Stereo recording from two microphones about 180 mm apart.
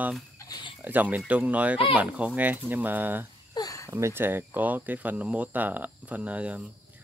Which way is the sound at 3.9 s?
15° right (ahead or behind).